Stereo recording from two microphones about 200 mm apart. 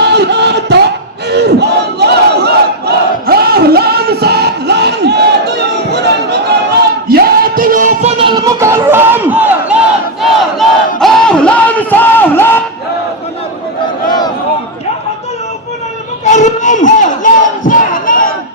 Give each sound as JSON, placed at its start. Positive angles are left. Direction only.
{"t": 0.0, "sound": "a sound", "side_deg": -55}
{"t": 1.3, "sound": "battle cry", "side_deg": -55}
{"t": 7.1, "sound": "music", "side_deg": -50}
{"t": 8.2, "sound": "crowd", "side_deg": -20}
{"t": 16.2, "sound": "crowd", "side_deg": 35}